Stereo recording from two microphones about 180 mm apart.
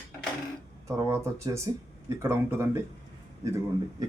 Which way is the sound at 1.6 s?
15° right (ahead or behind).